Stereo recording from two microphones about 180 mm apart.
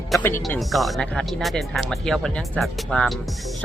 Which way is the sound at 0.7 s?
Centre (ahead or behind).